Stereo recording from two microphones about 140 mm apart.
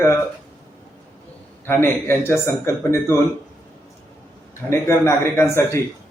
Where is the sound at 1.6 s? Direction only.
15° left (ahead or behind).